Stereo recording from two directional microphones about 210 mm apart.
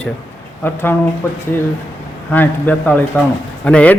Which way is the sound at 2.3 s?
10° left (ahead or behind).